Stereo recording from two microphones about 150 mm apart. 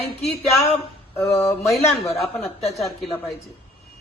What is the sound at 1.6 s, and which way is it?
Speech, centre (ahead or behind).